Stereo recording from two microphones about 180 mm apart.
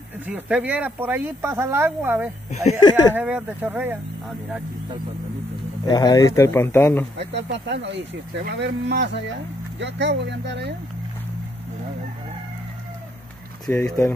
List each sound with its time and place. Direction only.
0.3 s speech: 5° right (ahead or behind)
5.9 s speech: 20° left (ahead or behind)
7.2 s speech: 70° right (ahead or behind)
13.7 s speech: 10° left (ahead or behind)